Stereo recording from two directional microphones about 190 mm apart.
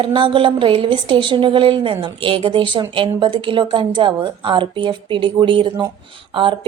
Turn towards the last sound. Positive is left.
turn(degrees=-25)  # may be behind; listen again after turning